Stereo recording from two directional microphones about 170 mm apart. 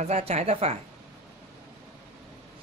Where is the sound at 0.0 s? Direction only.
40° right (ahead or behind).